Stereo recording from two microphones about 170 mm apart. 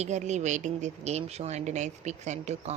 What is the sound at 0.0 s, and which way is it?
Speech, 45° right (ahead or behind).